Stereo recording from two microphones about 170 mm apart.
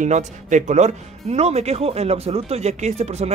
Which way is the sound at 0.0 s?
45° right (ahead or behind).